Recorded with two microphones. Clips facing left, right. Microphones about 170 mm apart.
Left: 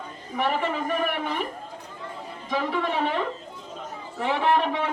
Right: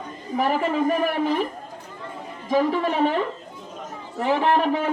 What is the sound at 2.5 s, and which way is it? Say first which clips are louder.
Speech: right 6 dB; 40° right (ahead or behind).